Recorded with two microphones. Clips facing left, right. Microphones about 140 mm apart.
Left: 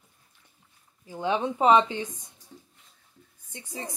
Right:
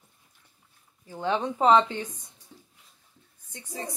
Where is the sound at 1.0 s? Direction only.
15° left (ahead or behind).